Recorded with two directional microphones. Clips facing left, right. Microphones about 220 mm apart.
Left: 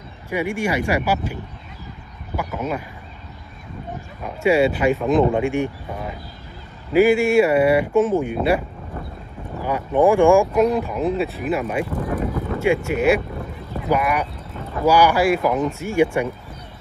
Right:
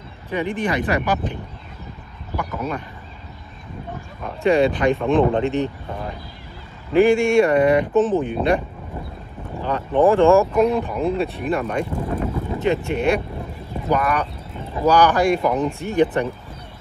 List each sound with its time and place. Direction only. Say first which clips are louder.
0.3 s speech: even; 10° left (ahead or behind)
4.2 s speech: even; 5° left (ahead or behind)
11.9 s speech: left 1 dB; 25° right (ahead or behind)
12.5 s speech: left 1 dB; 10° left (ahead or behind)
14.5 s a sound: left 1 dB; 15° right (ahead or behind)
14.9 s speech: even; 10° left (ahead or behind)